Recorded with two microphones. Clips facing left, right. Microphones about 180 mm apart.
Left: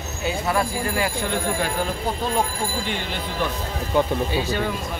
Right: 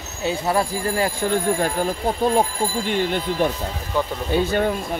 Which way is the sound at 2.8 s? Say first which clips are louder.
Right 6 dB; 50° right (ahead or behind).